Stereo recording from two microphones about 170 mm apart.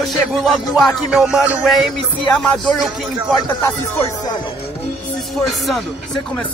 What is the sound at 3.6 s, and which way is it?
Music, 15° left (ahead or behind).